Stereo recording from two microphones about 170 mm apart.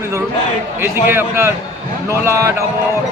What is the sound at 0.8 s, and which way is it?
A man's voice, 15° right (ahead or behind).